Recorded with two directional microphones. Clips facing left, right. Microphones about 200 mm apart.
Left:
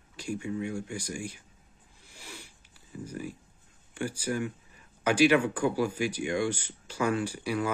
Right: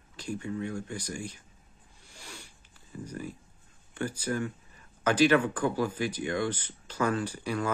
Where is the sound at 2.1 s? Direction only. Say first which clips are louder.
Left 1 dB; 5° left (ahead or behind).